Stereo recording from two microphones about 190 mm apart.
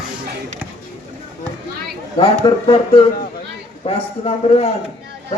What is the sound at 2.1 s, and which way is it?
A man's voice, 30° left (ahead or behind).